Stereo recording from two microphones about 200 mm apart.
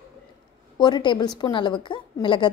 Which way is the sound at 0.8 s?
25° left (ahead or behind).